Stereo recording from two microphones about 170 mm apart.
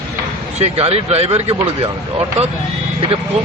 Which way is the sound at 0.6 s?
35° right (ahead or behind).